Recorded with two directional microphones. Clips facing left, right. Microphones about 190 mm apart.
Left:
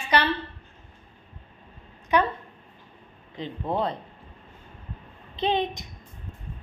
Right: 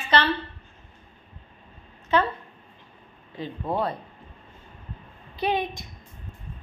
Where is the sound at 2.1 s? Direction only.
15° left (ahead or behind).